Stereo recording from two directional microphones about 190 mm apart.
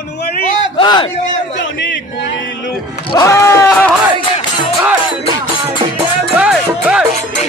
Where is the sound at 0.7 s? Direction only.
25° left (ahead or behind).